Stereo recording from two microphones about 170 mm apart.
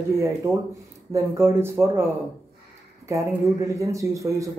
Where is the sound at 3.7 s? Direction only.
20° right (ahead or behind).